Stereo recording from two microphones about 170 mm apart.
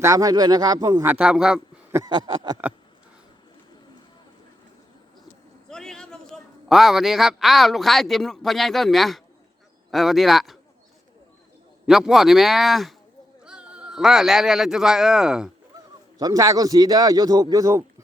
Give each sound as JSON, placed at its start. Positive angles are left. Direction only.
{"t": 0.0, "sound": "a man's voice", "side_deg": -20}
{"t": 1.1, "sound": "a man's voice", "side_deg": -5}
{"t": 1.9, "sound": "a man's voice", "side_deg": -20}
{"t": 5.6, "sound": "a man's voice", "side_deg": 5}
{"t": 11.9, "sound": "speech", "side_deg": -5}
{"t": 16.1, "sound": "a man's voice", "side_deg": -20}